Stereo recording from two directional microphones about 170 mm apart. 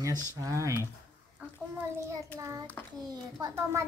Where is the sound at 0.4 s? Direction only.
20° right (ahead or behind).